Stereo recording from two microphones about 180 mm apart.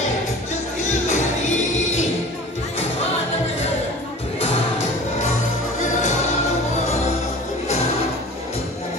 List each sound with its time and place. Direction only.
1.0 s music: 40° left (ahead or behind)